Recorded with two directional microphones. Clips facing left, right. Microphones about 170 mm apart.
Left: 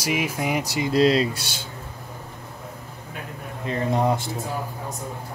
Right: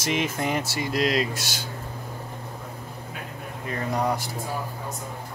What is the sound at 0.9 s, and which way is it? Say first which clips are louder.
Speech: left 6 dB; 30° left (ahead or behind).